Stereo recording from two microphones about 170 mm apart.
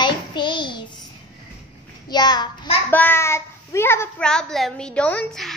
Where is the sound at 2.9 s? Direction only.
10° left (ahead or behind).